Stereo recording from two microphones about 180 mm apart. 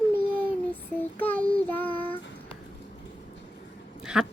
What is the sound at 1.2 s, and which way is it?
Child singing, 10° left (ahead or behind).